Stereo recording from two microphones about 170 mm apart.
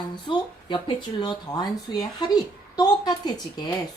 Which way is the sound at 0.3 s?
30° left (ahead or behind).